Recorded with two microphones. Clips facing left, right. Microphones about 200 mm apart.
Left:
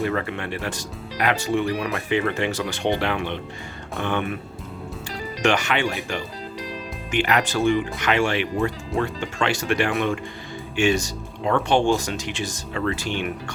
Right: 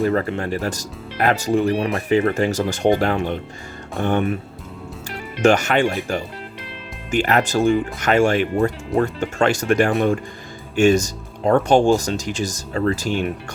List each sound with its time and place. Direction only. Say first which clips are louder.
0.0 s speech: right 5 dB; 35° right (ahead or behind)
5.4 s speech: right 6 dB; 45° right (ahead or behind)
7.1 s speech: right 4 dB; 45° right (ahead or behind)